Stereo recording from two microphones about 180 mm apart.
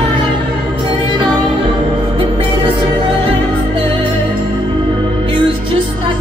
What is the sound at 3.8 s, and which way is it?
Music, 30° right (ahead or behind).